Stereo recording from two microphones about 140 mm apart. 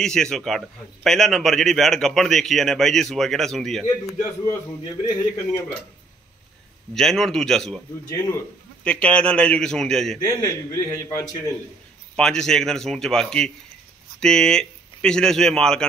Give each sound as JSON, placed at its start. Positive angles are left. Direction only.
{"t": 0.0, "sound": "a man's voice", "side_deg": 5}
{"t": 5.0, "sound": "a man's voice", "side_deg": 25}
{"t": 6.9, "sound": "a man's voice", "side_deg": 5}
{"t": 8.8, "sound": "a man's voice", "side_deg": 10}
{"t": 10.2, "sound": "a man's voice", "side_deg": 20}
{"t": 12.2, "sound": "a man's voice", "side_deg": 5}